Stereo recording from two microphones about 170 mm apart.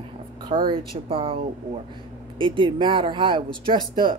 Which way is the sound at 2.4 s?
30° right (ahead or behind).